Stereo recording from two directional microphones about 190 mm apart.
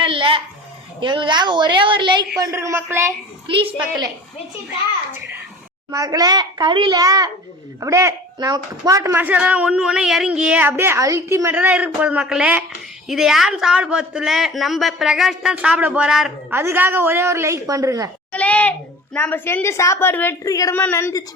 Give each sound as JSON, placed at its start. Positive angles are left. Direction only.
{"t": 0.0, "sound": "a sound", "side_deg": -25}
{"t": 0.9, "sound": "a child's voice", "side_deg": -25}
{"t": 3.4, "sound": "a child's voice", "side_deg": -25}
{"t": 5.9, "sound": "a child's voice", "side_deg": -15}
{"t": 18.3, "sound": "a child's voice", "side_deg": 5}